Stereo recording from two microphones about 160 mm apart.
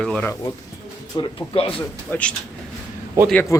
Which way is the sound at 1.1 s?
25° left (ahead or behind).